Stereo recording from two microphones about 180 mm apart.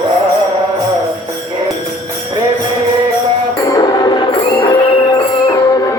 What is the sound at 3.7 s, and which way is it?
Music, 20° left (ahead or behind).